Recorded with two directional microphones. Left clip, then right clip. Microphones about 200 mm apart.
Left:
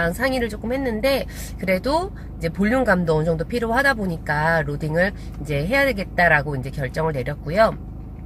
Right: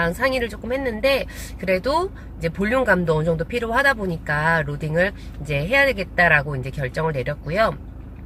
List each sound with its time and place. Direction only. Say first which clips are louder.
0.0 s speech: right 1 dB; 15° left (ahead or behind)